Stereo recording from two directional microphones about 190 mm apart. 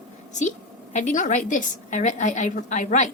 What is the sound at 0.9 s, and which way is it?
A woman's voice, 40° left (ahead or behind).